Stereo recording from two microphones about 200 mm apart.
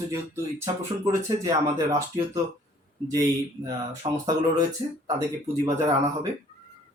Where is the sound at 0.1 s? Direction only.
15° right (ahead or behind).